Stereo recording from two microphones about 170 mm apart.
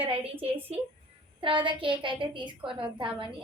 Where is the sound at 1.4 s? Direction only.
30° right (ahead or behind).